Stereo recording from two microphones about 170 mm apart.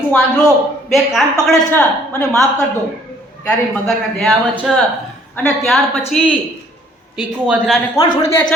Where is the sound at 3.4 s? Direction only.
Centre (ahead or behind).